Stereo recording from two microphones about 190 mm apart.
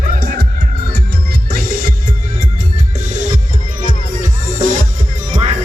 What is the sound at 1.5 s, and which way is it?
Music, 45° right (ahead or behind).